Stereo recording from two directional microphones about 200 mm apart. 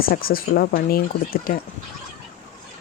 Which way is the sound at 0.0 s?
45° left (ahead or behind).